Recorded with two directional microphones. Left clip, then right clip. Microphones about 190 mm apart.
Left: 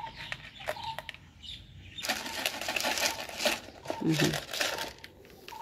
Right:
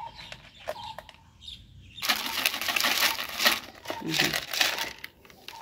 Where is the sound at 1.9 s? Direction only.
15° left (ahead or behind).